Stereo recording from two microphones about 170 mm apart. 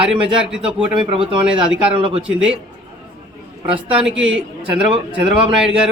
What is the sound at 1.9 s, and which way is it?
Speech, 35° right (ahead or behind).